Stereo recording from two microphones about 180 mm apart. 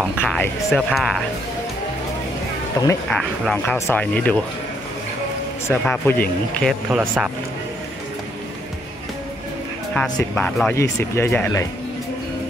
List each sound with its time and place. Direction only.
0.0 s music: centre (ahead or behind)
0.4 s speech: centre (ahead or behind)
2.8 s speech: 15° left (ahead or behind)
3.1 s speech: centre (ahead or behind)
5.7 s speech: 10° left (ahead or behind)
6.7 s speech: 10° right (ahead or behind)
9.9 s speech: 5° left (ahead or behind)